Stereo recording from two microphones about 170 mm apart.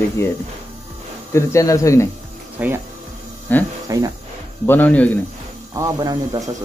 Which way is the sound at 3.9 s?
20° right (ahead or behind).